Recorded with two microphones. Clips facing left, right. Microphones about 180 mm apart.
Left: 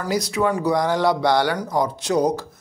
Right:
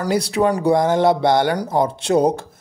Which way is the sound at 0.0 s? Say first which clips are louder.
Right 4 dB; 30° right (ahead or behind).